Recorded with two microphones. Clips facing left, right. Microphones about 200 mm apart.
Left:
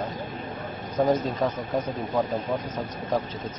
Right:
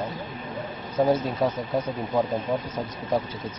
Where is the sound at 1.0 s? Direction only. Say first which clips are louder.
Right 1 dB; centre (ahead or behind).